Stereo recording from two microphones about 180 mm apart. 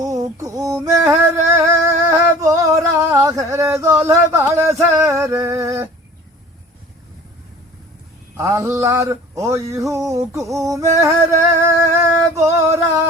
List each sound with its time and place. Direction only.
0.0 s music: 20° right (ahead or behind)
8.4 s speech: 15° right (ahead or behind)
11.6 s music: 15° right (ahead or behind)